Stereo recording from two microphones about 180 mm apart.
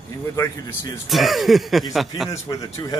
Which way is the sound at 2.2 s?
20° left (ahead or behind).